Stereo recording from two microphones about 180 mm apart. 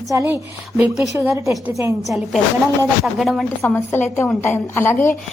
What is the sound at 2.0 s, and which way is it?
A woman's voice, centre (ahead or behind).